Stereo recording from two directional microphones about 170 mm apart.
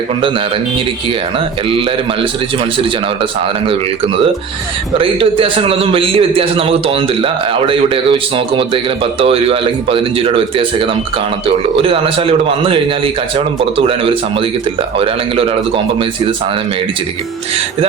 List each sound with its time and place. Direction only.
3.7 s a man's voice: 35° right (ahead or behind)